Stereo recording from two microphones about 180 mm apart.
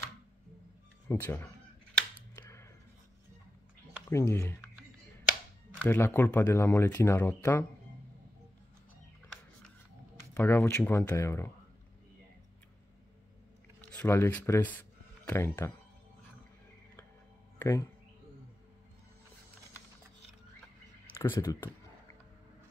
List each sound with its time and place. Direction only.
1.0 s speech: 15° left (ahead or behind)
2.3 s a sound: 15° left (ahead or behind)
4.1 s speech: 15° left (ahead or behind)
5.8 s speech: 10° left (ahead or behind)
10.3 s speech: 15° left (ahead or behind)
13.7 s speech: 10° left (ahead or behind)
17.6 s speech: 15° left (ahead or behind)
21.2 s speech: 15° left (ahead or behind)